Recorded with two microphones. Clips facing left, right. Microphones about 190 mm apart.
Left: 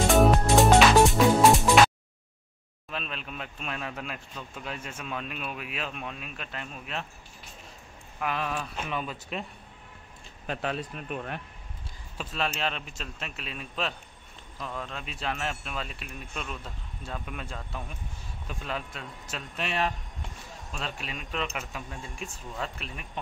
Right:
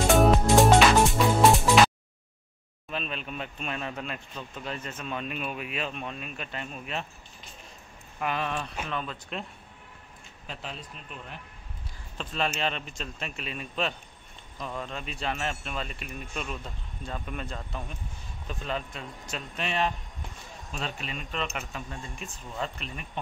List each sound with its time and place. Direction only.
0.1 s music: centre (ahead or behind)
2.9 s speech: centre (ahead or behind)
8.2 s speech: centre (ahead or behind)
10.4 s a man's voice: 60° left (ahead or behind)
12.2 s speech: 5° left (ahead or behind)